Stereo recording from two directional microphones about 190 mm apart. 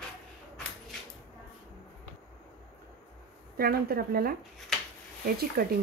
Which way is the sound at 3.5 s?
50° right (ahead or behind).